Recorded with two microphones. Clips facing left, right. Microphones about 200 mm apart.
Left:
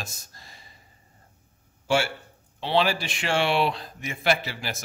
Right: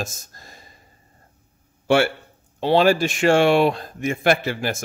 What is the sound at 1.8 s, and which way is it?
Speech, 60° right (ahead or behind).